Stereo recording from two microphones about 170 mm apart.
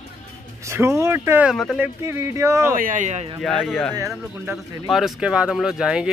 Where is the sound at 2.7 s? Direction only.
50° right (ahead or behind).